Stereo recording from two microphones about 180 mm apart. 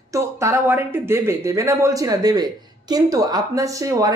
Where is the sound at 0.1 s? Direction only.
15° right (ahead or behind).